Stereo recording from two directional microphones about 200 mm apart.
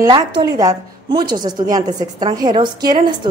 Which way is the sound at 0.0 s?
20° right (ahead or behind).